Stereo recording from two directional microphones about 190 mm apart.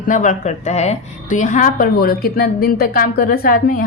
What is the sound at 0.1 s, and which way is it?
A woman's voice, 40° left (ahead or behind).